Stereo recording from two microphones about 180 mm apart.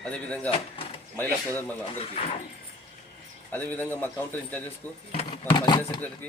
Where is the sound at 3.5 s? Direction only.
10° left (ahead or behind).